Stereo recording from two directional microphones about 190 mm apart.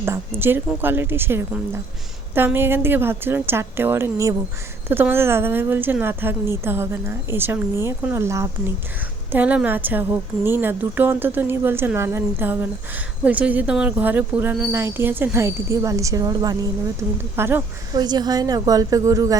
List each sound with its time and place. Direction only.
0.0 s speech: 15° right (ahead or behind)